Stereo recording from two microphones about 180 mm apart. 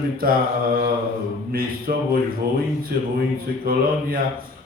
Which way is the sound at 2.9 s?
55° right (ahead or behind).